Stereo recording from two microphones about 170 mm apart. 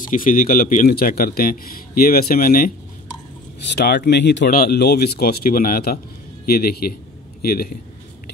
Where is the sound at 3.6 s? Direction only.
80° left.